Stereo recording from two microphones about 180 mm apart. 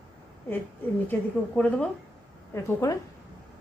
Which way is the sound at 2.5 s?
15° left (ahead or behind).